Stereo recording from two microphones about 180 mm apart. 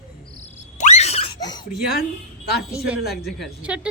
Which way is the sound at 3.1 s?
Centre (ahead or behind).